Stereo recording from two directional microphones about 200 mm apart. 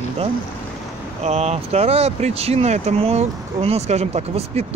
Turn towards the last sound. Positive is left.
turn(degrees=-30)  # may be behind; listen again after turning